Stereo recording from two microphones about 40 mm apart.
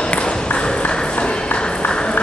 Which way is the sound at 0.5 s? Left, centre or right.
Left.